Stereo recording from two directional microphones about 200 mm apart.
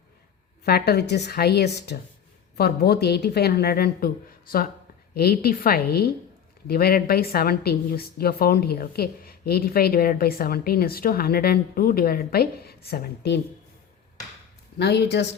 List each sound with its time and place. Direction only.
0.6 s a woman's voice: 50° left (ahead or behind)
14.8 s speech: 55° left (ahead or behind)